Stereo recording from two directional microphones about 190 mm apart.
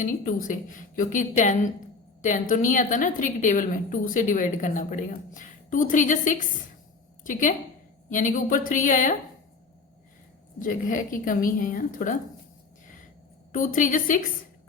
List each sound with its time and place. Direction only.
0.0 s a woman's voice: 45° left (ahead or behind)
10.6 s a woman's voice: 45° left (ahead or behind)
13.5 s a woman's voice: 45° left (ahead or behind)